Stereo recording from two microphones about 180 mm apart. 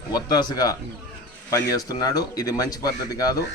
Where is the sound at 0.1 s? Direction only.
20° left (ahead or behind).